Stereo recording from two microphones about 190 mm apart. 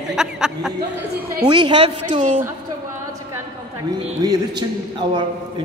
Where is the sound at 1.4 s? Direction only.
25° right (ahead or behind).